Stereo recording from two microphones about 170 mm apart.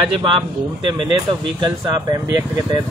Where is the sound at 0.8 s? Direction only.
30° right (ahead or behind).